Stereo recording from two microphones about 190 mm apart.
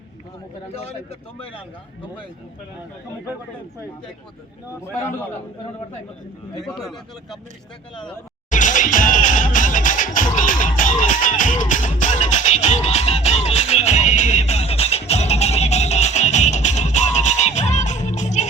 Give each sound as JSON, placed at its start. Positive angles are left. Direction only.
{"t": 6.6, "sound": "speech", "side_deg": 0}
{"t": 8.4, "sound": "music", "side_deg": 40}